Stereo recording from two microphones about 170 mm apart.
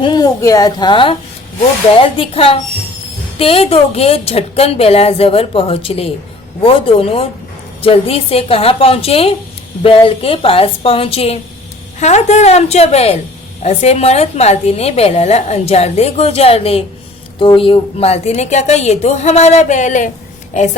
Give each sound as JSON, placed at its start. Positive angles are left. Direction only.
{"t": 0.0, "sound": "a woman's voice", "side_deg": 25}
{"t": 2.1, "sound": "a woman's voice", "side_deg": 35}